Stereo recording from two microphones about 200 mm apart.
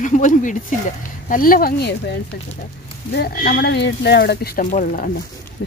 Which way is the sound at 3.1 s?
50° left (ahead or behind).